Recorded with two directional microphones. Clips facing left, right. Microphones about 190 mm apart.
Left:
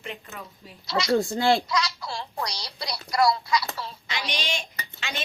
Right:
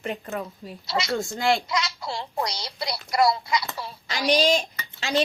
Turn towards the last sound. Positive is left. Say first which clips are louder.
# right 10 dB
turn(degrees=-35)  # may be behind; listen again after turning